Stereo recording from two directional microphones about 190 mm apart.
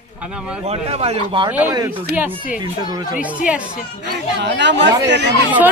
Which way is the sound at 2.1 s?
10° right (ahead or behind).